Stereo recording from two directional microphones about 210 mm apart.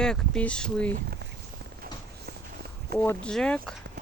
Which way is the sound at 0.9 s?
45° right (ahead or behind).